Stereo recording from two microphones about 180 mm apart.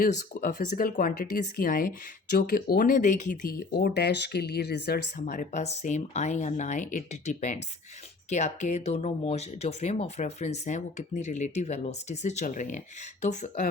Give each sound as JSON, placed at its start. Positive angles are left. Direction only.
{"t": 0.0, "sound": "speech", "side_deg": 45}
{"t": 3.6, "sound": "speech", "side_deg": 60}